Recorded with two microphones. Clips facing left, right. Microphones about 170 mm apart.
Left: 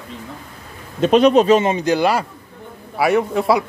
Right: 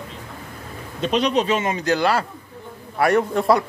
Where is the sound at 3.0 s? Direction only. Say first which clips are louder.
Left 1 dB; 5° left (ahead or behind).